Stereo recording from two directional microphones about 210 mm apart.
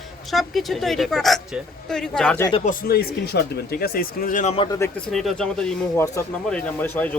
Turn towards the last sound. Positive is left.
turn(degrees=5)  # may be behind; listen again after turning